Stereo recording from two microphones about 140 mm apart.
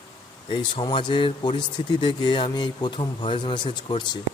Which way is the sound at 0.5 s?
35° left (ahead or behind).